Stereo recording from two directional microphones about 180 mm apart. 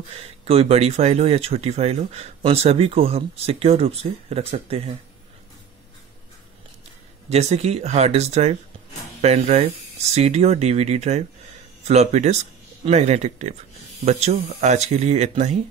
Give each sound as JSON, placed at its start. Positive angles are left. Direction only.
{"t": 0.1, "sound": "speech", "side_deg": -35}
{"t": 7.2, "sound": "speech", "side_deg": -35}